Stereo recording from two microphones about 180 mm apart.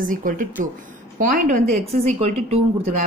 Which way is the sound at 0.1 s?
50° right (ahead or behind).